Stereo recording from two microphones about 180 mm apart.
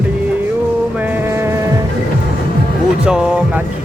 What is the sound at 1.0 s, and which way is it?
Music, 10° right (ahead or behind).